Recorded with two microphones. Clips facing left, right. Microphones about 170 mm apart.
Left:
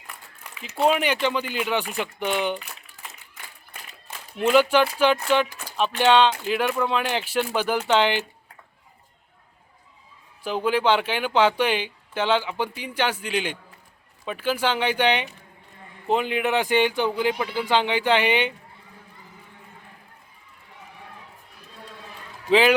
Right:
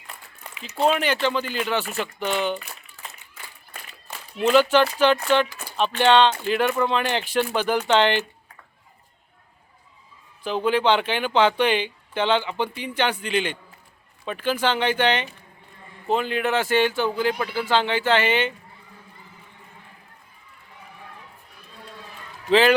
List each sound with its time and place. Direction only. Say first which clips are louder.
0.9 s speech: even; 10° left (ahead or behind)
4.4 s speech: right 1 dB; 10° left (ahead or behind)
10.4 s speech: right 1 dB; 10° left (ahead or behind)
22.4 s a man's voice: right 1 dB; 10° left (ahead or behind)